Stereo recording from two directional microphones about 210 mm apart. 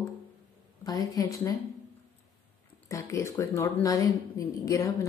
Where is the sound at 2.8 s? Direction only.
15° left (ahead or behind).